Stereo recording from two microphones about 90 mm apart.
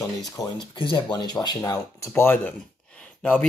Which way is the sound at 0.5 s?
60° left (ahead or behind).